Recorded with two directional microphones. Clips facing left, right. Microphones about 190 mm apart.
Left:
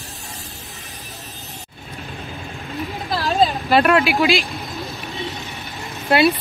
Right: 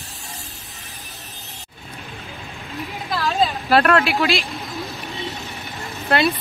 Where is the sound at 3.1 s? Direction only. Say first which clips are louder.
Left 1 dB; 35° left (ahead or behind).